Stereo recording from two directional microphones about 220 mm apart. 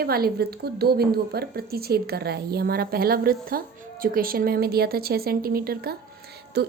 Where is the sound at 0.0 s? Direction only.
45° right (ahead or behind).